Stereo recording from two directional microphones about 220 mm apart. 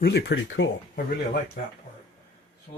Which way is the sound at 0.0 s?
50° left (ahead or behind).